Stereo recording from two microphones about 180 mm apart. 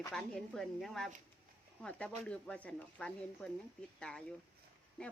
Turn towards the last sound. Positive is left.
turn(degrees=5)  # may be behind; listen again after turning